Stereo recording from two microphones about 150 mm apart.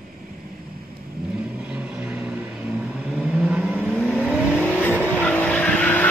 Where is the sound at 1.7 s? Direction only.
5° right (ahead or behind).